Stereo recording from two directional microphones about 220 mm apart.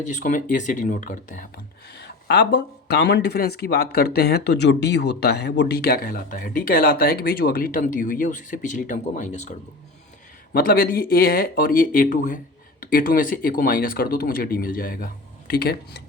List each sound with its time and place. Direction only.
0.1 s speech: 35° left (ahead or behind)
10.5 s speech: 40° left (ahead or behind)